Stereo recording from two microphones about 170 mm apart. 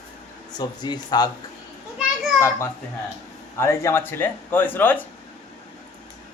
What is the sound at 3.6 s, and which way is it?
Speech, 15° left (ahead or behind).